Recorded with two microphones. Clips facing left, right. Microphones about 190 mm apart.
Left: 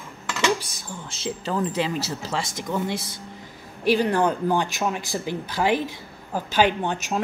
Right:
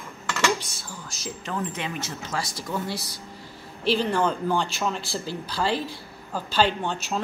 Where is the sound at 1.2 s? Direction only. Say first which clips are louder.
Left 5 dB; 30° left (ahead or behind).